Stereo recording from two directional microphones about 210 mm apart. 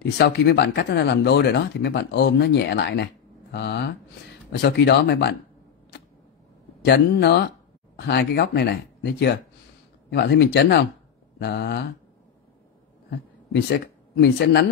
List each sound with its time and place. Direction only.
0.0 s speech: 50° left (ahead or behind)
5.9 s a sound: 55° left (ahead or behind)
6.8 s speech: 50° left (ahead or behind)
13.1 s speech: 50° left (ahead or behind)